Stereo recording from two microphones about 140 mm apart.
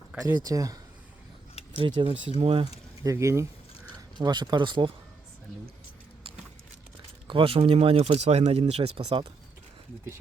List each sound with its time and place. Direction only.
0.2 s speech: 30° right (ahead or behind)
2.0 s speech: 40° right (ahead or behind)
3.0 s speech: 20° right (ahead or behind)
7.3 s speech: 40° right (ahead or behind)